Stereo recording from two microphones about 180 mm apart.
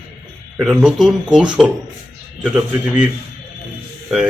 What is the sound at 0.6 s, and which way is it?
A man's voice, 5° right (ahead or behind).